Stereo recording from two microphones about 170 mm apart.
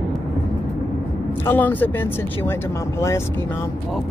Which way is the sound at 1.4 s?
10° left (ahead or behind).